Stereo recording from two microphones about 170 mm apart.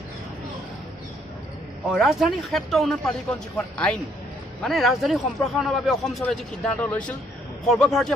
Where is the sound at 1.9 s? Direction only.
Centre (ahead or behind).